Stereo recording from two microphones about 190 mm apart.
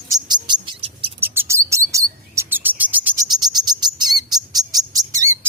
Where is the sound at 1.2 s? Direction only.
10° right (ahead or behind).